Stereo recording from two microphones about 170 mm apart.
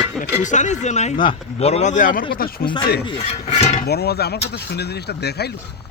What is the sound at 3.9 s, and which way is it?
Speech, 70° left (ahead or behind).